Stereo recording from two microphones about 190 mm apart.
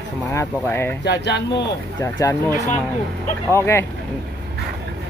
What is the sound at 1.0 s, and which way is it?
Speech, 60° left (ahead or behind).